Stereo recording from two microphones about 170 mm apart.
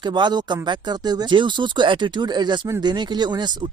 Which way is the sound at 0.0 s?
25° right (ahead or behind).